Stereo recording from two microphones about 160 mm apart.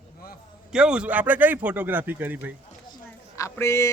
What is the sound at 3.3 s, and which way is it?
Speech, 20° left (ahead or behind).